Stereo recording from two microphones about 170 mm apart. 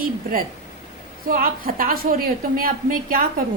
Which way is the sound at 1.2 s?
60° right (ahead or behind).